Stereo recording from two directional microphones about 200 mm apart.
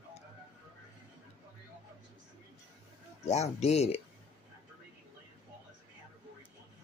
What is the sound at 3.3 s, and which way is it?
Speech, 35° left (ahead or behind).